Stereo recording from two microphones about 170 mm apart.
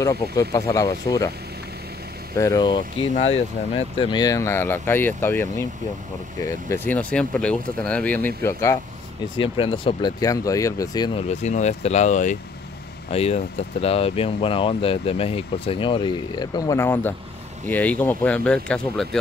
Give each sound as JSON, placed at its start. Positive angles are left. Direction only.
{"t": 0.0, "sound": "speech", "side_deg": 20}
{"t": 2.3, "sound": "speech", "side_deg": 20}
{"t": 9.4, "sound": "speech", "side_deg": 30}
{"t": 10.2, "sound": "speech", "side_deg": 20}
{"t": 11.1, "sound": "speech", "side_deg": 40}